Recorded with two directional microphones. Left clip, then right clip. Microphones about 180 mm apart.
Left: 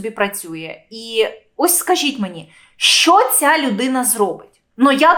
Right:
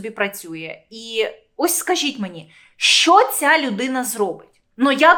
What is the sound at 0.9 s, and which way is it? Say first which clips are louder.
Speech: left 3 dB; 25° left (ahead or behind).